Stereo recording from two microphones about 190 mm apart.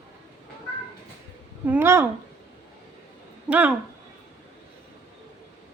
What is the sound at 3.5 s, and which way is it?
Speech, 10° right (ahead or behind).